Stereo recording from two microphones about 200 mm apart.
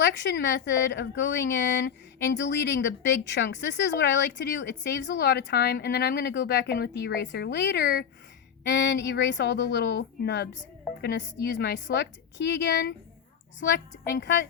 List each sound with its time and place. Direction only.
0.0 s a woman's voice: 60° left (ahead or behind)